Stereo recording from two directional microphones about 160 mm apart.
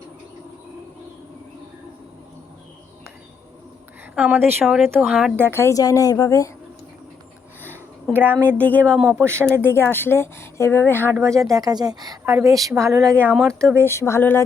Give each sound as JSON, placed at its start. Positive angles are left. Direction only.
{"t": 4.1, "sound": "speech", "side_deg": -10}
{"t": 5.4, "sound": "a woman's voice", "side_deg": 15}
{"t": 8.1, "sound": "a woman's voice", "side_deg": -10}
{"t": 9.6, "sound": "a woman's voice", "side_deg": 15}
{"t": 11.2, "sound": "speech", "side_deg": -20}
{"t": 13.3, "sound": "speech", "side_deg": 5}
{"t": 13.8, "sound": "a woman's voice", "side_deg": 15}